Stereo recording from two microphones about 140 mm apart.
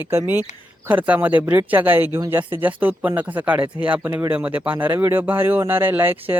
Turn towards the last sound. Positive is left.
turn(degrees=-15)  # may be behind; listen again after turning